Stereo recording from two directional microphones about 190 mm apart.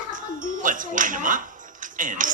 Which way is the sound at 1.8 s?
45° right (ahead or behind).